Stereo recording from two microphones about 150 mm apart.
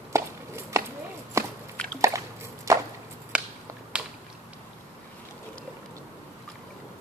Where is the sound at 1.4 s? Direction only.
20° right (ahead or behind).